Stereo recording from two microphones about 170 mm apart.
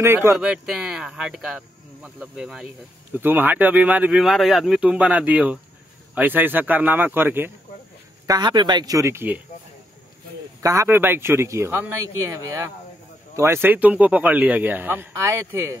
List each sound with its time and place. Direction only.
0.0 s speech: 15° right (ahead or behind)
0.4 s speech: 5° right (ahead or behind)
8.3 s speech: 25° right (ahead or behind)
10.6 s speech: 20° right (ahead or behind)